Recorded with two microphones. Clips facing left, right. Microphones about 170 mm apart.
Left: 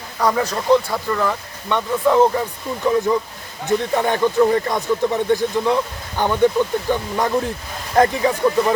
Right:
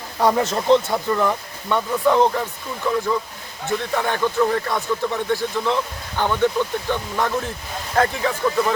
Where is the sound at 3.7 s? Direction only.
20° left (ahead or behind).